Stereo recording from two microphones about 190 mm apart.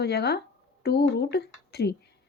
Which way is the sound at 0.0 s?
60° left (ahead or behind).